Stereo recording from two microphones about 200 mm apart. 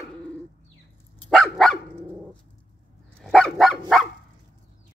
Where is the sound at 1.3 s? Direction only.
Centre (ahead or behind).